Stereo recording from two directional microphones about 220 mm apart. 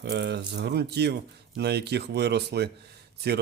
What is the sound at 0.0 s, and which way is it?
Speech, 50° right (ahead or behind).